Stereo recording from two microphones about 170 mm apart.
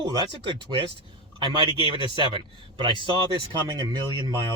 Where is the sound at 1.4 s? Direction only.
25° right (ahead or behind).